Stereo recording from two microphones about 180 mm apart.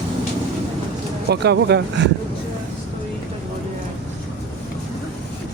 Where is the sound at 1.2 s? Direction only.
65° right (ahead or behind).